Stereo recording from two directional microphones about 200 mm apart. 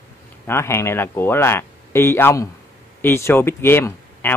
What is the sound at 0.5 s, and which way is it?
A man's voice, 15° left (ahead or behind).